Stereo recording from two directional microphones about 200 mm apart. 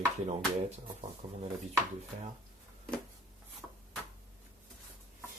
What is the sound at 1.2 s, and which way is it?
Speech, 15° right (ahead or behind).